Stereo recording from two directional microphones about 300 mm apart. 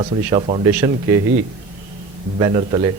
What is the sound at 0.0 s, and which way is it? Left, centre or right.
Speech, centre.